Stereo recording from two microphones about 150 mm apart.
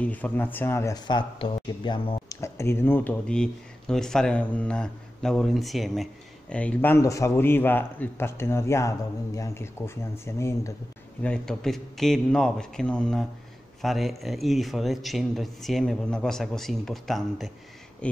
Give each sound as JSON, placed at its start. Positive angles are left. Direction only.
{"t": 0.0, "sound": "a man's voice", "side_deg": 10}
{"t": 2.2, "sound": "speech", "side_deg": 20}
{"t": 6.5, "sound": "a man's voice", "side_deg": 10}
{"t": 11.2, "sound": "a man's voice", "side_deg": 5}